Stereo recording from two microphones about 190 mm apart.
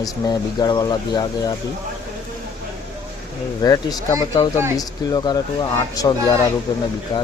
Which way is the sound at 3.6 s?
20° left (ahead or behind).